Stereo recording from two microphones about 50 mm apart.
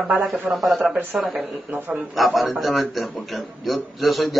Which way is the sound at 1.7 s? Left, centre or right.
Right.